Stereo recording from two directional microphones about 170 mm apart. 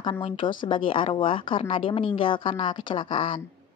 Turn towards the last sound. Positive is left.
turn(degrees=30)  # may be behind; listen again after turning